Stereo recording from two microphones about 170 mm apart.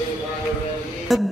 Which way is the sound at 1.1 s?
Centre (ahead or behind).